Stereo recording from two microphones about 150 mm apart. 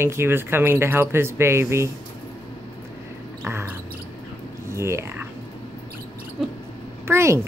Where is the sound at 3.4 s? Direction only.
15° right (ahead or behind).